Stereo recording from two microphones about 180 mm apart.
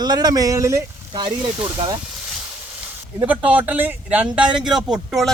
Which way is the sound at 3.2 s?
10° right (ahead or behind).